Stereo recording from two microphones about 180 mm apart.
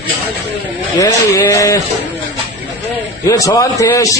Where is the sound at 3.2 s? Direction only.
20° left (ahead or behind).